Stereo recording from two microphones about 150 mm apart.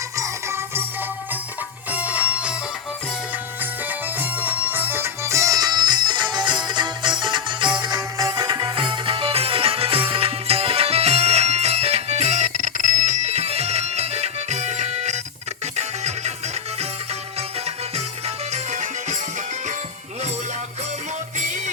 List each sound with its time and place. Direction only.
0.2 s music: 15° right (ahead or behind)
1.9 s music: 10° right (ahead or behind)
4.2 s music: 10° right (ahead or behind); by 16.3 s 50° right (ahead or behind)
18.5 s music: 55° right (ahead or behind)